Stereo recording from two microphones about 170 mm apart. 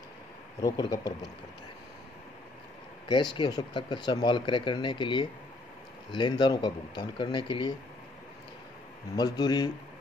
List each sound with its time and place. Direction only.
0.6 s speech: 20° left (ahead or behind)
3.3 s speech: 25° left (ahead or behind)
9.1 s speech: 25° left (ahead or behind)